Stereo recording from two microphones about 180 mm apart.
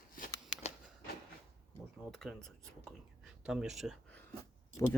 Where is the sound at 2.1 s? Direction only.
Centre (ahead or behind).